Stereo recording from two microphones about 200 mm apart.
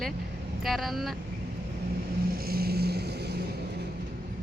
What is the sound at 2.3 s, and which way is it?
Vehicle, 50° right (ahead or behind).